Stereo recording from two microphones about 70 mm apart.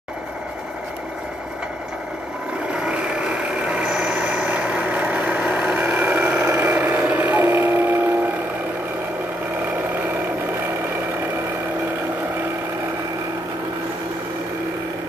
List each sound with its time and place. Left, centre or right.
2.7 s vehicle: centre